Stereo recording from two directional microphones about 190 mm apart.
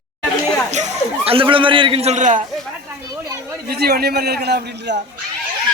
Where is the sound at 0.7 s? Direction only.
35° right (ahead or behind).